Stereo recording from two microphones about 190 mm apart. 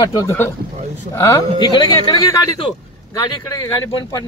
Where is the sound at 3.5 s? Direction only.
20° left (ahead or behind).